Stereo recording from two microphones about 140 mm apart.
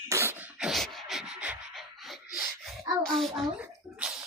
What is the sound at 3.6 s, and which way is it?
Bathtub, 10° right (ahead or behind).